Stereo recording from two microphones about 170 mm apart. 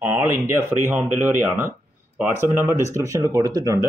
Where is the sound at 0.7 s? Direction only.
15° right (ahead or behind).